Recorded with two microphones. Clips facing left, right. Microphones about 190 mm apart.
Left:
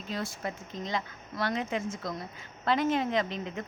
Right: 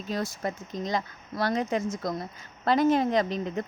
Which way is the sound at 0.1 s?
40° right (ahead or behind).